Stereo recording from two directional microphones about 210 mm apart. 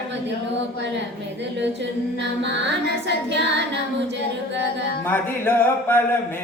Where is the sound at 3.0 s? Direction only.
55° right (ahead or behind).